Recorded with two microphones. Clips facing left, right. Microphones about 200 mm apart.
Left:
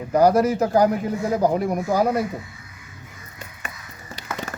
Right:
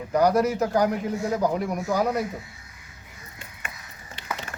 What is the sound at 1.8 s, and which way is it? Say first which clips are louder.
Speech: left 3 dB; 45° left (ahead or behind).